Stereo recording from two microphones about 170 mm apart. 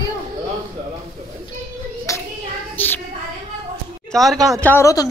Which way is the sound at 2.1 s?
20° left (ahead or behind).